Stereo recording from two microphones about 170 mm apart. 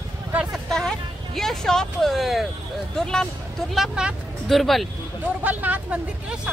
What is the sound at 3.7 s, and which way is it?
Speech, 5° right (ahead or behind).